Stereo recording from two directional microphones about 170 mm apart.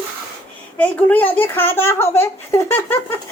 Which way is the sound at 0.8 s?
10° left (ahead or behind).